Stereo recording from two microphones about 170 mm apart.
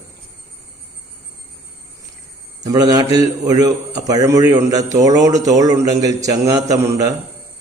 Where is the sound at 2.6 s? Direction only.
25° right (ahead or behind).